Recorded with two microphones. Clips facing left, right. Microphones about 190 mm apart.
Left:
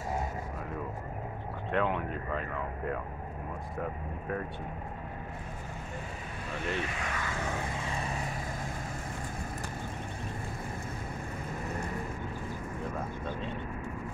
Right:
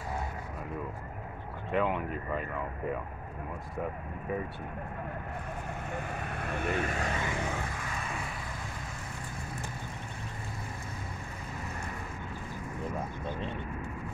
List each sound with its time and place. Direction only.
1.7 s speech: 5° right (ahead or behind)
5.9 s vehicle: 60° right (ahead or behind)
7.1 s vehicle: 25° right (ahead or behind)
7.8 s vehicle: 30° left (ahead or behind)